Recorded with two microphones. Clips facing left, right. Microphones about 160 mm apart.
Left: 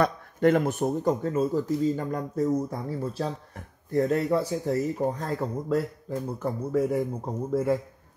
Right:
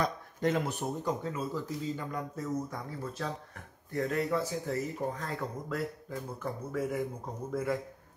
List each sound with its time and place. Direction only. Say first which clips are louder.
0.0 s speech: left 8 dB; 60° left (ahead or behind); by 7.8 s 30° left (ahead or behind)